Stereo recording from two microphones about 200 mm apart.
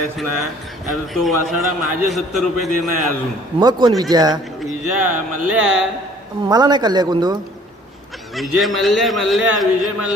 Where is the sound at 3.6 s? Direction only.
20° right (ahead or behind).